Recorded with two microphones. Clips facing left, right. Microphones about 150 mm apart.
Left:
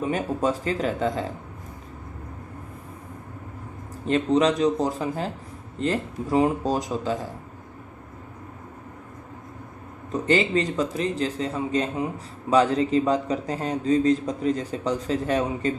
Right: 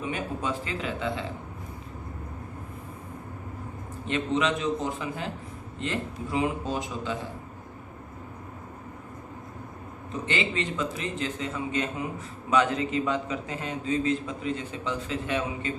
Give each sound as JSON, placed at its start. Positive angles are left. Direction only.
{"t": 0.0, "sound": "a man's voice", "side_deg": 40}
{"t": 4.0, "sound": "a man's voice", "side_deg": 40}
{"t": 10.1, "sound": "a man's voice", "side_deg": 40}